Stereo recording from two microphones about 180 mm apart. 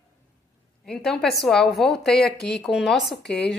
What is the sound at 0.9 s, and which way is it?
A woman's voice, 5° left (ahead or behind).